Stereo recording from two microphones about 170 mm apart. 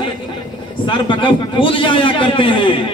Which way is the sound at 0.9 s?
30° left (ahead or behind).